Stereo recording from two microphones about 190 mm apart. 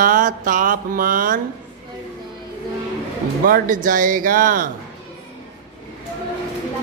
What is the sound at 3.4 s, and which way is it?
Music, 45° right (ahead or behind).